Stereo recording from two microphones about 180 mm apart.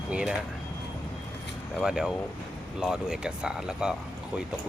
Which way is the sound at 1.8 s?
5° right (ahead or behind).